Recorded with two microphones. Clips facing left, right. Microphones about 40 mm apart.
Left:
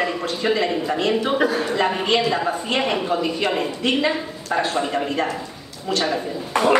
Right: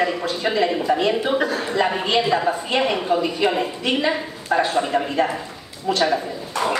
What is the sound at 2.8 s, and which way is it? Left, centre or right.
Speech, centre.